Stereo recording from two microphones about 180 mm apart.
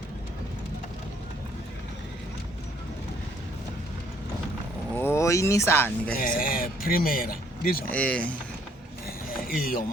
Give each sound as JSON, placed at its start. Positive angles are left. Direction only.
{"t": 4.9, "sound": "vehicle", "side_deg": 15}
{"t": 6.1, "sound": "speech", "side_deg": 50}
{"t": 7.9, "sound": "speech", "side_deg": 5}
{"t": 9.6, "sound": "speech", "side_deg": 55}